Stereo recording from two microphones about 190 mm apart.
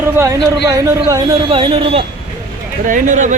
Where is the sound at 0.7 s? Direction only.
20° right (ahead or behind).